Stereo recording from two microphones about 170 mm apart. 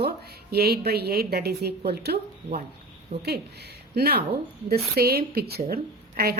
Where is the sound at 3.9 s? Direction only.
70° right (ahead or behind).